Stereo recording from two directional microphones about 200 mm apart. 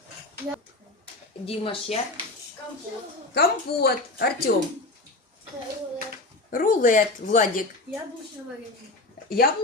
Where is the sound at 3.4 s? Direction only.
55° left (ahead or behind).